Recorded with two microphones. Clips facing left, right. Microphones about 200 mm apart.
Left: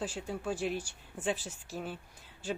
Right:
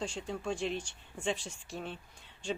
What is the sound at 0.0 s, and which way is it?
Speech, 5° left (ahead or behind).